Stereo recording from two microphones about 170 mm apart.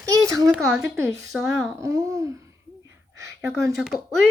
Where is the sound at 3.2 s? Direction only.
15° right (ahead or behind).